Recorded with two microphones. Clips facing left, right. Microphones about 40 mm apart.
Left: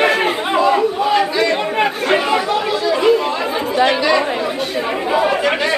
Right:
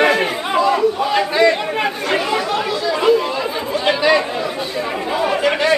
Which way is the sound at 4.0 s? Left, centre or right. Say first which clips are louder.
Even; centre.